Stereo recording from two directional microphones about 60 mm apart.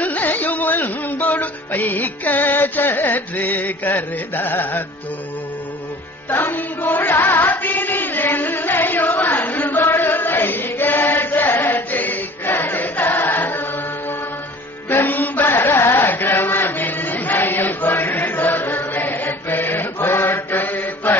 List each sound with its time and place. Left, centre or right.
0.0 s music: left
6.3 s music: left
11.6 s choir: left
14.9 s chant: left